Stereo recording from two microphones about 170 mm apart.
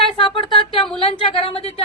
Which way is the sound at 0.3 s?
30° left (ahead or behind).